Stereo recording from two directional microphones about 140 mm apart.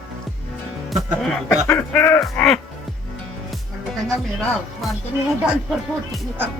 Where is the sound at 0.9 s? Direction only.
Centre (ahead or behind).